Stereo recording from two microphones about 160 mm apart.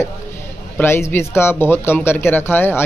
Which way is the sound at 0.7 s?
15° left (ahead or behind).